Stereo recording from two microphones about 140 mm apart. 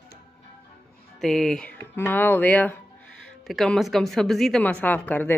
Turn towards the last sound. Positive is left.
turn(degrees=15)  # may be behind; listen again after turning